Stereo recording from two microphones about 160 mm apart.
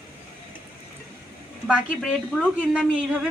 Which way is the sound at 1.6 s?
5° right (ahead or behind).